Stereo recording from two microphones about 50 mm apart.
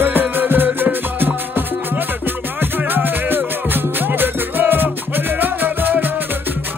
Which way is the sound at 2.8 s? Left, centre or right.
Right.